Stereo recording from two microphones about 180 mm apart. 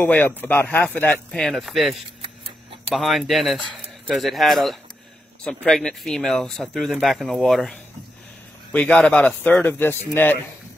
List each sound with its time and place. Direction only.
0.0 s speech: 10° left (ahead or behind)
2.2 s a sound: 30° right (ahead or behind)
2.9 s speech: centre (ahead or behind)